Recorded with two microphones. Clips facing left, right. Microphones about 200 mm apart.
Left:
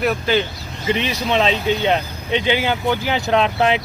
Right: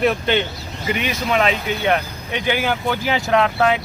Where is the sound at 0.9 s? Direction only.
30° left (ahead or behind).